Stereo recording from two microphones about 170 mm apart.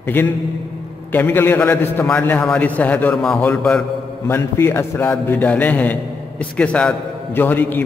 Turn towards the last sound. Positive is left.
turn(degrees=10)  # may be behind; listen again after turning